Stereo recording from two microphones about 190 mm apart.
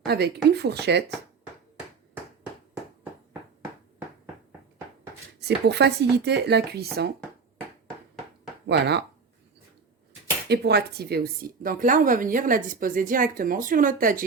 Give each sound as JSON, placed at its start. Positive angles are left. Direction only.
{"t": 0.1, "sound": "speech", "side_deg": -60}
{"t": 5.4, "sound": "speech", "side_deg": -60}
{"t": 8.6, "sound": "speech", "side_deg": -65}
{"t": 10.5, "sound": "speech", "side_deg": -60}